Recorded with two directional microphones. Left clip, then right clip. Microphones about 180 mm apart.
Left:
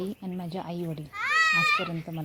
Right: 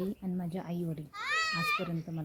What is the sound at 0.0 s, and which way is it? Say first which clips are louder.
Speech: left 3 dB; 10° left (ahead or behind).